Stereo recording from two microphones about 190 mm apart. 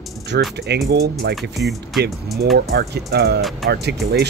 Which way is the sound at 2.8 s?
60° right (ahead or behind).